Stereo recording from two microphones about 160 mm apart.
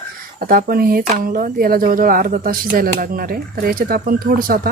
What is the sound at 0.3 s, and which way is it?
Speech, 65° right (ahead or behind).